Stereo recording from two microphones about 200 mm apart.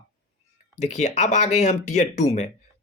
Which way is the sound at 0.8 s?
35° left (ahead or behind).